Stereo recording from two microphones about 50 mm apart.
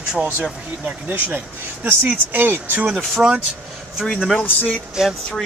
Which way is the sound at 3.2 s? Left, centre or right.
Centre.